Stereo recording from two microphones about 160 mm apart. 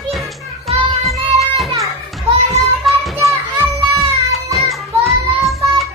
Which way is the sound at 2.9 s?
Centre (ahead or behind).